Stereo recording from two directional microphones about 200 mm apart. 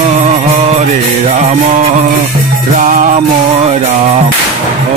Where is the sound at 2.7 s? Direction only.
40° right (ahead or behind).